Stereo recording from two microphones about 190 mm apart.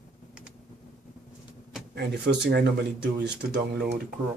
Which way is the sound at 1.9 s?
60° right (ahead or behind).